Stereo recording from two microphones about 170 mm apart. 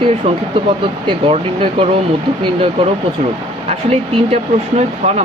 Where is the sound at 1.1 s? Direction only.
35° right (ahead or behind).